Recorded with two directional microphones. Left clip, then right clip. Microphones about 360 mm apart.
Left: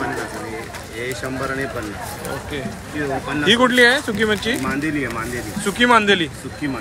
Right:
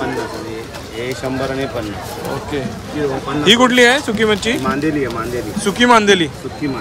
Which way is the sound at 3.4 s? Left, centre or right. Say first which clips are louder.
Right 3 dB; centre.